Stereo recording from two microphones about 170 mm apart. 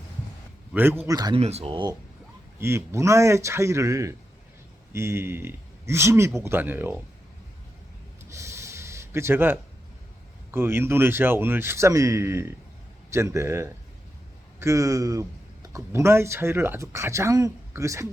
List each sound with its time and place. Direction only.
0.7 s a man's voice: 10° right (ahead or behind)
1.0 s speech: 25° right (ahead or behind)
1.4 s speech: 35° right (ahead or behind)
2.6 s speech: 15° right (ahead or behind)
8.3 s a sound: 15° right (ahead or behind)
10.5 s speech: 15° right (ahead or behind)